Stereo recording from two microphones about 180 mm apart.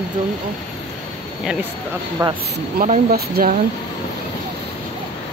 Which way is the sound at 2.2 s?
20° right (ahead or behind).